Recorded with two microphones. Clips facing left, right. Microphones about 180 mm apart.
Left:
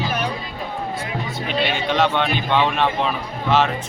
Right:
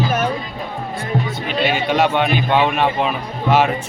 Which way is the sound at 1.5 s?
5° right (ahead or behind).